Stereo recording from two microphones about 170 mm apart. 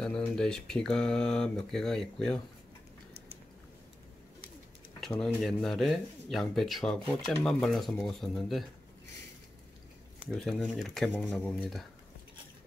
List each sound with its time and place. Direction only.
0.0 s speech: 5° left (ahead or behind)
5.0 s speech: 5° left (ahead or behind)
10.3 s speech: 5° left (ahead or behind)